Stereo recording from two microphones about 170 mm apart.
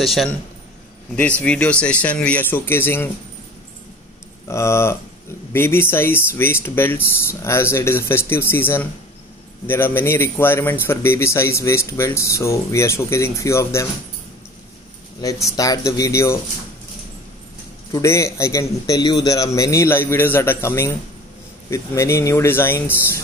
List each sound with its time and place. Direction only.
0.0 s a man's voice: centre (ahead or behind)
1.4 s speech: 5° left (ahead or behind)
4.5 s speech: 15° left (ahead or behind)
15.5 s speech: 20° left (ahead or behind)
17.9 s speech: 15° left (ahead or behind)